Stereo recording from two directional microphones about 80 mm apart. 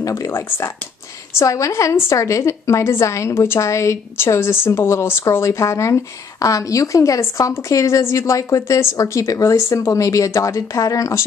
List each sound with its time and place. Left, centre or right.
0.0 s speech: left
0.3 s speech: left
1.4 s a woman's voice: left